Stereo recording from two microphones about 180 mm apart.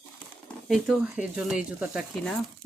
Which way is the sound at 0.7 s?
Centre (ahead or behind).